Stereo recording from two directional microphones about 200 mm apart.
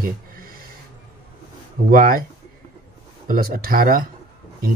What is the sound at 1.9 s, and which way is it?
Speech, 45° right (ahead or behind).